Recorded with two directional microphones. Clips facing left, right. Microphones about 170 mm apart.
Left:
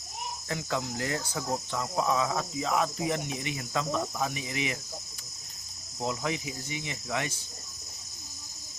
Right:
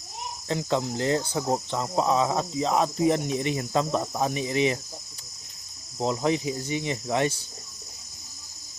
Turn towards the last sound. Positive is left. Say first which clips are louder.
# right 8 dB
turn(degrees=-35)  # may be behind; listen again after turning